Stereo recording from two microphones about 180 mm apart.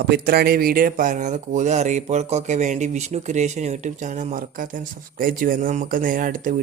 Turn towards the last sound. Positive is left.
turn(degrees=-50)  # may be behind; listen again after turning